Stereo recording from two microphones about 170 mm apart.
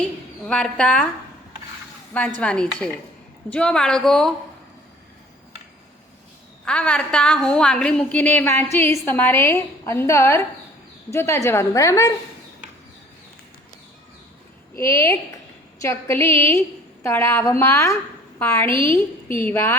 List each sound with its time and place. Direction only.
0.4 s a woman's voice: 5° left (ahead or behind)
2.4 s a woman's voice: 5° left (ahead or behind)
6.7 s a woman's voice: 5° left (ahead or behind)
14.8 s a woman's voice: 15° left (ahead or behind)